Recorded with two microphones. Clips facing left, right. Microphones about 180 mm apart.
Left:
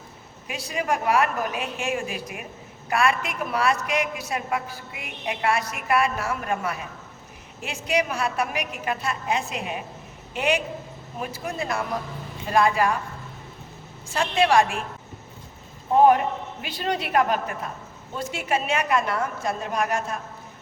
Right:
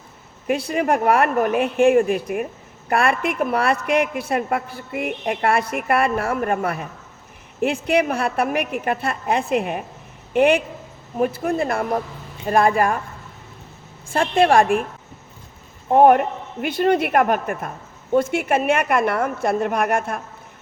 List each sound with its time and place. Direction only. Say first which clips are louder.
0.4 s a woman's voice: right 8 dB; 60° right (ahead or behind)
14.1 s a woman's voice: right 4 dB; 55° right (ahead or behind)
15.9 s a woman's voice: right 4 dB; 55° right (ahead or behind)